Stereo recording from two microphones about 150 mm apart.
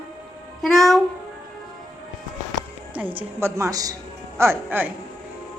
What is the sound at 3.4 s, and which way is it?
A woman's voice, 20° right (ahead or behind).